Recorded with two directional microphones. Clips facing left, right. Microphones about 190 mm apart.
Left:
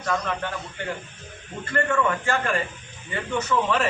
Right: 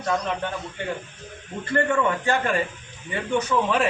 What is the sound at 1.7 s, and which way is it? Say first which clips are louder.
A man's voice: right 2 dB; 20° right (ahead or behind).